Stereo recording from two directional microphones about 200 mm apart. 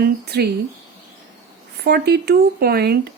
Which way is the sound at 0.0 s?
55° right (ahead or behind).